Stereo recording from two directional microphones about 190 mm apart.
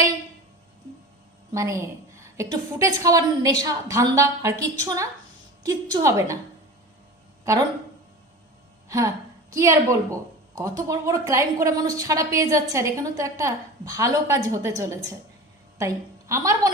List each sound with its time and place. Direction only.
1.5 s a woman's voice: 15° right (ahead or behind)
8.9 s a woman's voice: 15° right (ahead or behind)